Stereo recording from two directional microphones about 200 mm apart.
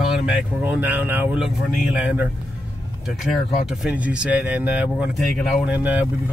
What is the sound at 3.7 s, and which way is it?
Speech, 5° right (ahead or behind).